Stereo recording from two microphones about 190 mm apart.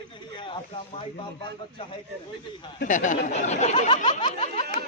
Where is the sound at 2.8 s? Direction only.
40° left (ahead or behind).